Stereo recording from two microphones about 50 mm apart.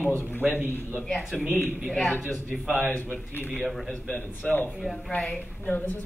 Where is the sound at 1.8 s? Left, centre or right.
Centre.